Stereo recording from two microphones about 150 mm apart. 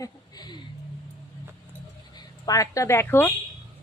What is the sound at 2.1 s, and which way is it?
A woman's voice, 25° left (ahead or behind).